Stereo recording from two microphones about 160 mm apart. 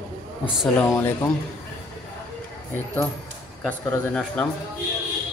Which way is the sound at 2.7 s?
15° left (ahead or behind).